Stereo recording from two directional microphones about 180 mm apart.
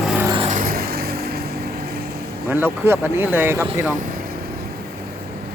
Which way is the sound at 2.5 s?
10° right (ahead or behind).